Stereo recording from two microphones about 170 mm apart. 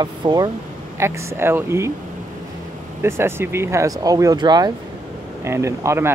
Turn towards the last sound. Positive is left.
turn(degrees=-15)  # may be behind; listen again after turning